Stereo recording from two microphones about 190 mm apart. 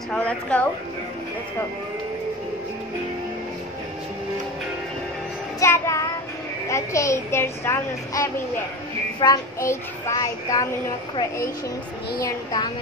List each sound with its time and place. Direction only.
0.1 s a woman's voice: 5° left (ahead or behind)
5.6 s a woman's voice: 15° left (ahead or behind)